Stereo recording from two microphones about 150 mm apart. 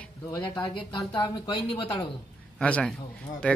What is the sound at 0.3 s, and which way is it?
Speech, 25° left (ahead or behind).